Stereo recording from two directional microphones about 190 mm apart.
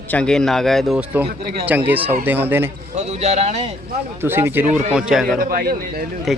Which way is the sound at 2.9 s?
35° right (ahead or behind).